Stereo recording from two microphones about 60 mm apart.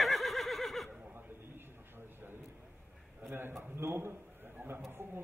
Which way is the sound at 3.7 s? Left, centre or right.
Right.